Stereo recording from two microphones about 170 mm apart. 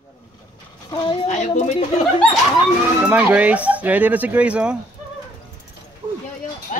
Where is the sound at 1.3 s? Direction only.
45° left (ahead or behind).